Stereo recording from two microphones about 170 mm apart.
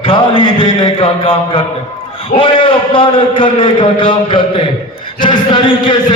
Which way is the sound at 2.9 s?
30° left (ahead or behind).